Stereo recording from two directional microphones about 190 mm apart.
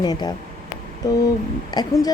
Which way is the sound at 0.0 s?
20° left (ahead or behind).